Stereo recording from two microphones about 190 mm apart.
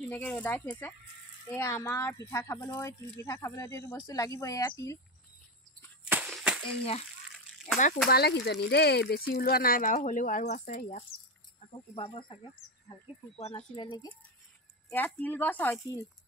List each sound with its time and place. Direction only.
0.1 s speech: 10° left (ahead or behind)
6.0 s a sound: 5° right (ahead or behind)
6.6 s speech: 30° left (ahead or behind)
8.1 s speech: 60° left (ahead or behind)
11.9 s speech: 30° left (ahead or behind)
13.4 s speech: 35° left (ahead or behind)
14.9 s speech: 10° left (ahead or behind)